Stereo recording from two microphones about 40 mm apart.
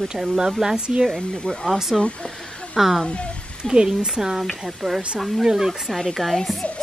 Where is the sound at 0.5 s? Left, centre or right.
Centre.